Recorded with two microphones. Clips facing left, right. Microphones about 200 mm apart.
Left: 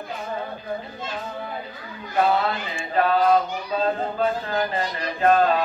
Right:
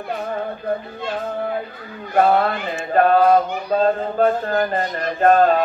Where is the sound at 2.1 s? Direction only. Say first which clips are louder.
Right 5 dB; 55° right (ahead or behind).